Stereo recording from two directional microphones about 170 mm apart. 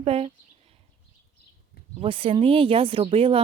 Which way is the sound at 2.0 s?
35° right (ahead or behind).